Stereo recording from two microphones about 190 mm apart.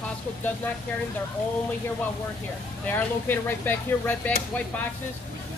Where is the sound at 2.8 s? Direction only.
10° left (ahead or behind).